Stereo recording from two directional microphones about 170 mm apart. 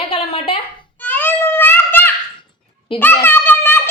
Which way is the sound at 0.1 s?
35° left (ahead or behind).